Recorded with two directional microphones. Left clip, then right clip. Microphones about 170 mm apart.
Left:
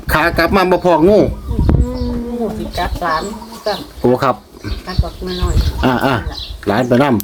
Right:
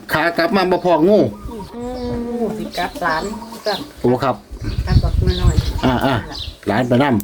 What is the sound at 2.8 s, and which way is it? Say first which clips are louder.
Speech: left 2 dB; centre (ahead or behind).